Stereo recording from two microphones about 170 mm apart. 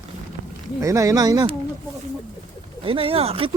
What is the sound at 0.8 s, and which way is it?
Speech, 20° right (ahead or behind).